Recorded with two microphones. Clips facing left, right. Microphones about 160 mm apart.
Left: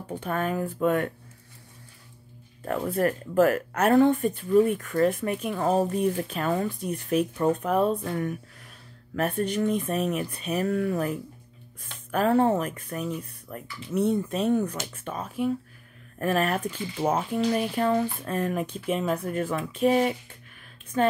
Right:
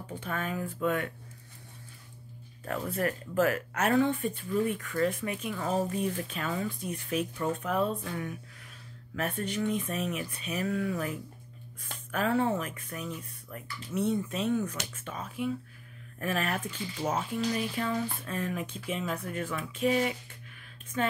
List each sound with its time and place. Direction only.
0.1 s speech: 35° left (ahead or behind)
0.4 s speech: 50° left (ahead or behind)
2.6 s speech: 35° left (ahead or behind)